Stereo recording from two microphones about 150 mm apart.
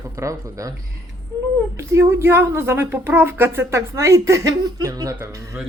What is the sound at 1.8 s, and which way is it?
Speech, 15° right (ahead or behind).